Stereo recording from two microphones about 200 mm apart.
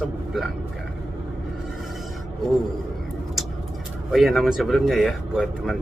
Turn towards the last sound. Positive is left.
turn(degrees=0)  # may be behind; listen again after turning